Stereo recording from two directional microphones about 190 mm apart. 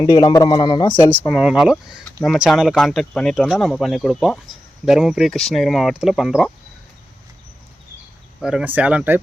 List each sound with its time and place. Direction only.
0.0 s a man's voice: 20° left (ahead or behind)
1.1 s speech: 10° left (ahead or behind)
1.4 s speech: 5° right (ahead or behind)
8.4 s speech: 5° right (ahead or behind)